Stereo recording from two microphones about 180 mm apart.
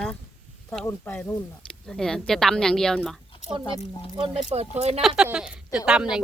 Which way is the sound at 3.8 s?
30° left (ahead or behind).